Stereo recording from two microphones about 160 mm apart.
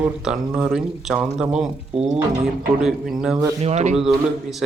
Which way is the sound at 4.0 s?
Centre (ahead or behind).